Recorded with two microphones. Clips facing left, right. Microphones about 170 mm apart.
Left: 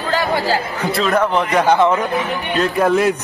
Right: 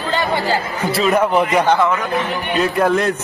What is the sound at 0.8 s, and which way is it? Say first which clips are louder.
Speech: right 2 dB; 5° right (ahead or behind).